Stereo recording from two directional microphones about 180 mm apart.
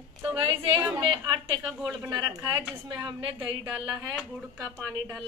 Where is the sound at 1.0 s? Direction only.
25° right (ahead or behind).